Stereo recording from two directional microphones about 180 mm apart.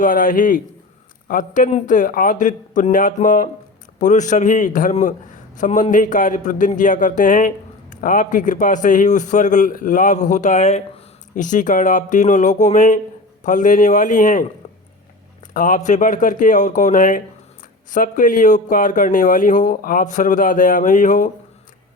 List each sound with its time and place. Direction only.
0.0 s a man's voice: 50° left (ahead or behind)
15.5 s a man's voice: 50° left (ahead or behind)